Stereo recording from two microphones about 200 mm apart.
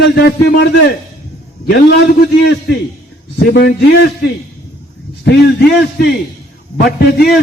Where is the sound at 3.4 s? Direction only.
50° left (ahead or behind).